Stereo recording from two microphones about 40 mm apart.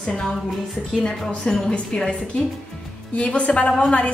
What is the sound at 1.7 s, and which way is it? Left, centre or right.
A woman's voice, left.